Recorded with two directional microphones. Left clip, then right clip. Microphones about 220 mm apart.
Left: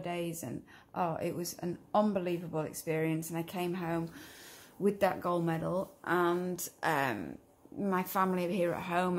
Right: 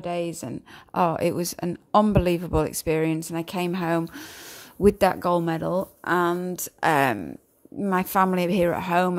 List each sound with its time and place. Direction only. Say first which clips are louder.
0.0 s speech: right 9 dB; 40° right (ahead or behind)